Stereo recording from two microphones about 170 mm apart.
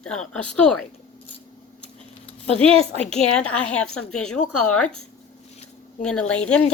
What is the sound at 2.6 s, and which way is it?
Speech, 35° right (ahead or behind).